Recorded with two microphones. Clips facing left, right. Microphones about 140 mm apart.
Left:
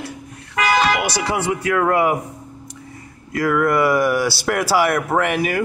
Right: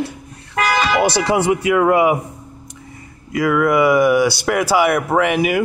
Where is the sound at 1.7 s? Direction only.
10° right (ahead or behind).